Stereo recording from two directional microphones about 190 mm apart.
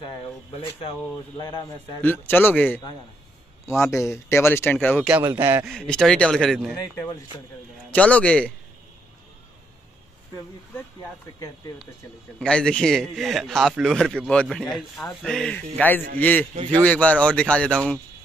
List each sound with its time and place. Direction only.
0.0 s a man's voice: 25° left (ahead or behind)
2.0 s speech: 10° left (ahead or behind)
3.8 s speech: 15° left (ahead or behind)
4.7 s a man's voice: centre (ahead or behind)
5.2 s speech: 15° right (ahead or behind)
5.7 s a man's voice: 5° left (ahead or behind)
7.9 s speech: 5° left (ahead or behind)
12.4 s a man's voice: 5° left (ahead or behind)